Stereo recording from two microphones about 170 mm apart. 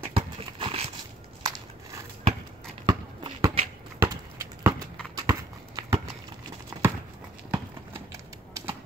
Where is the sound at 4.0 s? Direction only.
15° right (ahead or behind).